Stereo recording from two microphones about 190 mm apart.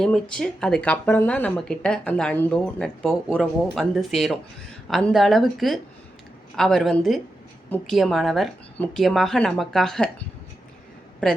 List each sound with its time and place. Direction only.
0.0 s speech: 5° left (ahead or behind)